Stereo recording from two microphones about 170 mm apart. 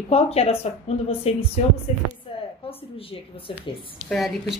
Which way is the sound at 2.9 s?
35° left (ahead or behind).